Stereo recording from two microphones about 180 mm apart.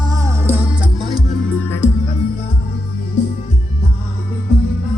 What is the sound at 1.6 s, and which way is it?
Music, 10° left (ahead or behind).